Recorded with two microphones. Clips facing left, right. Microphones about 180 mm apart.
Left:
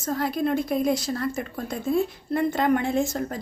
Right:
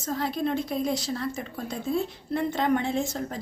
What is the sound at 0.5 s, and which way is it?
Speech, 10° left (ahead or behind).